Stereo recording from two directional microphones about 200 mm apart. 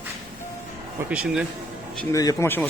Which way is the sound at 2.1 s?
15° left (ahead or behind).